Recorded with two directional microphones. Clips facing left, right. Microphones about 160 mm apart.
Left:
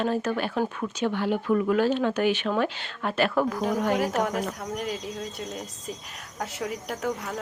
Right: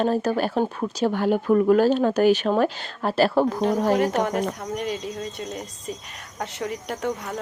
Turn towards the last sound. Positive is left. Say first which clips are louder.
# right 2 dB
turn(degrees=0)  # may be behind; listen again after turning